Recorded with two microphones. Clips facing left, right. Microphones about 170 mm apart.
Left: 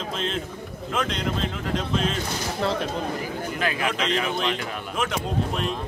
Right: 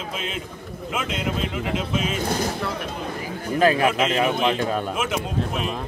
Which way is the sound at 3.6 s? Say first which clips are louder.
Right 9 dB; 40° right (ahead or behind).